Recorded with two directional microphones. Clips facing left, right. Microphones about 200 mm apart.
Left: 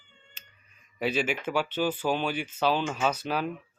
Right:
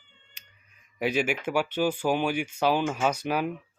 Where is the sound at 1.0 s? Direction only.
10° right (ahead or behind).